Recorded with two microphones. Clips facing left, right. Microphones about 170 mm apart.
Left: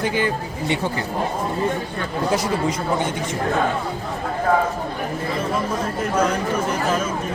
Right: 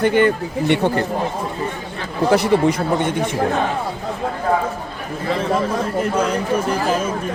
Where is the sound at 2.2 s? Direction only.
65° right (ahead or behind).